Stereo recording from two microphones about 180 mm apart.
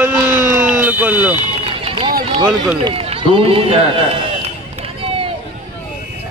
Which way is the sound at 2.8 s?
30° right (ahead or behind).